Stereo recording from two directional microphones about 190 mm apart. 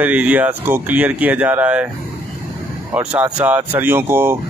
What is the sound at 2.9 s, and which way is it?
Speech, 10° right (ahead or behind).